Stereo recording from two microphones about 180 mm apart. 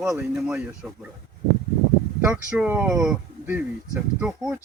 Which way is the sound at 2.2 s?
5° right (ahead or behind).